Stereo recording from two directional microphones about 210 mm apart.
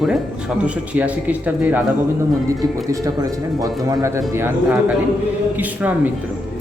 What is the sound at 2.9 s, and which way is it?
Speech, 15° right (ahead or behind).